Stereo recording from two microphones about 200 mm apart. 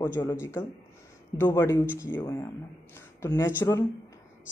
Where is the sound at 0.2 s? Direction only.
15° left (ahead or behind).